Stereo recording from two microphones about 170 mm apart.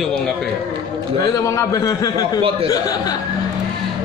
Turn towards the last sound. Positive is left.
turn(degrees=20)  # may be behind; listen again after turning